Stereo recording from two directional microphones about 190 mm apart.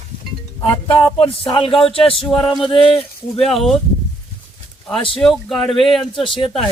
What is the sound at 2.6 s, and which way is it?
Speech, 25° left (ahead or behind).